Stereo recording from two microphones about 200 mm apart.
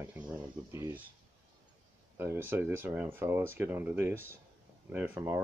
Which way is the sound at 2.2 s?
10° right (ahead or behind).